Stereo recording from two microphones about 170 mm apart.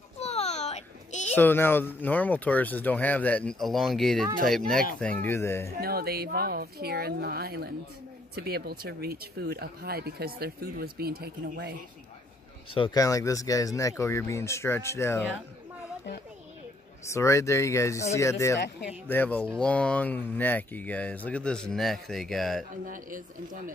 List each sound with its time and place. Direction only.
0.2 s a sound: 40° left (ahead or behind)
1.3 s speech: 10° left (ahead or behind)
5.8 s speech: 65° right (ahead or behind)
12.7 s speech: 25° left (ahead or behind)
17.1 s speech: 15° left (ahead or behind)
22.8 s speech: 55° right (ahead or behind)